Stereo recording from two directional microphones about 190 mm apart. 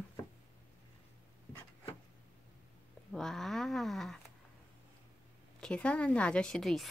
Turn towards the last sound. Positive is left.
turn(degrees=0)  # may be behind; listen again after turning